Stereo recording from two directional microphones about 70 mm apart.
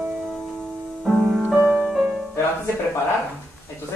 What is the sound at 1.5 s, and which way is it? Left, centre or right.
Music, right.